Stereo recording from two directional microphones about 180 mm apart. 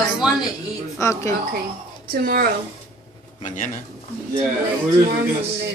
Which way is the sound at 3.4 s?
45° left (ahead or behind).